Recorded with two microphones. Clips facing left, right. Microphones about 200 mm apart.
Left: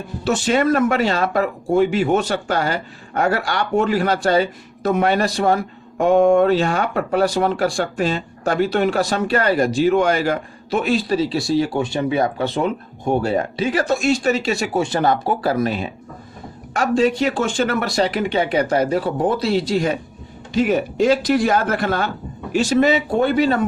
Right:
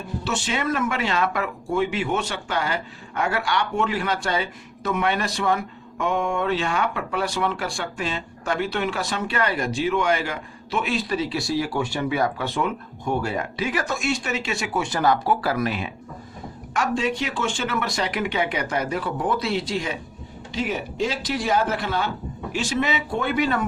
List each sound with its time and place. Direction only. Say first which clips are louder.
0.3 s speech: left 9 dB; 40° left (ahead or behind)